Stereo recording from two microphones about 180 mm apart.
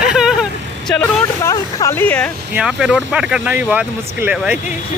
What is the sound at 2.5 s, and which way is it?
Speech, 5° right (ahead or behind).